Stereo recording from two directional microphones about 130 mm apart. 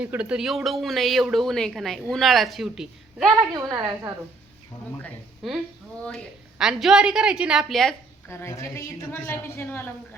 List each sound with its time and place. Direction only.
0.0 s speech: 10° right (ahead or behind)
3.5 s a woman's voice: 30° right (ahead or behind)
5.4 s speech: centre (ahead or behind)
6.6 s speech: 5° right (ahead or behind)
8.3 s a woman's voice: 20° left (ahead or behind)